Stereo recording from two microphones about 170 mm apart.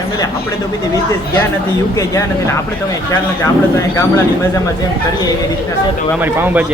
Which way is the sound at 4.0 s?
15° left (ahead or behind).